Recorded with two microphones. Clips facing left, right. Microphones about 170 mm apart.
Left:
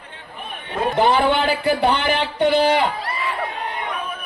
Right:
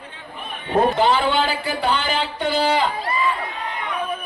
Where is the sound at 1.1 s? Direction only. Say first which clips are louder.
Left 2 dB; 65° left (ahead or behind).